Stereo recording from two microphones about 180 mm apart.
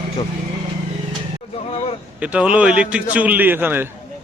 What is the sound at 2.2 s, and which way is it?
A man's voice, 5° right (ahead or behind).